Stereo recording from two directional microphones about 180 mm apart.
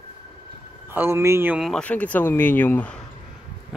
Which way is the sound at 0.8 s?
15° right (ahead or behind).